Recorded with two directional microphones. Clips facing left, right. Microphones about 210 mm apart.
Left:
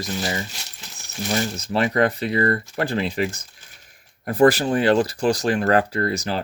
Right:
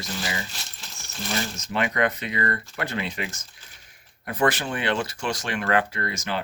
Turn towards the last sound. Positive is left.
turn(degrees=35)  # may be behind; listen again after turning